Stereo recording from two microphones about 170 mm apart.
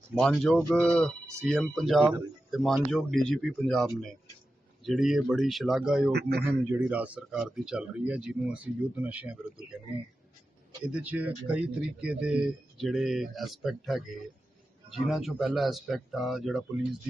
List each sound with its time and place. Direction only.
0.2 s speech: centre (ahead or behind)
4.9 s speech: centre (ahead or behind)
6.1 s a man's voice: 70° right (ahead or behind)
6.4 s speech: 10° right (ahead or behind)
10.8 s speech: 5° right (ahead or behind)